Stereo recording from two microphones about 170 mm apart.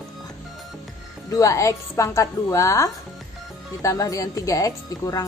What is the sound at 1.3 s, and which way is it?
A woman's voice, 20° left (ahead or behind).